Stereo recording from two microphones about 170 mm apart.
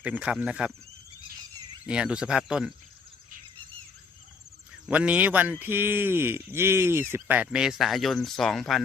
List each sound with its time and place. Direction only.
0.0 s speech: 5° right (ahead or behind)
1.9 s speech: 5° right (ahead or behind)
4.9 s speech: 10° right (ahead or behind)